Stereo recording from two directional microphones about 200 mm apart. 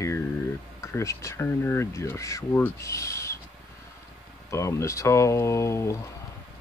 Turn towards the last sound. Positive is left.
turn(degrees=15)  # may be behind; listen again after turning